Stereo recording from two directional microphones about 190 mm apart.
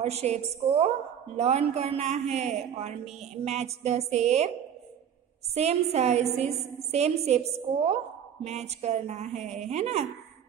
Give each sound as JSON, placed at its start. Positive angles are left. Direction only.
{"t": 0.0, "sound": "a woman's voice", "side_deg": -35}
{"t": 5.5, "sound": "a woman's voice", "side_deg": -35}